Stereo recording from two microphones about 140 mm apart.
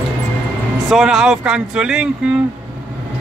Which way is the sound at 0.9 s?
5° right (ahead or behind).